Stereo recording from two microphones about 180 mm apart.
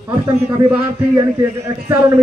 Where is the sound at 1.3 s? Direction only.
15° right (ahead or behind).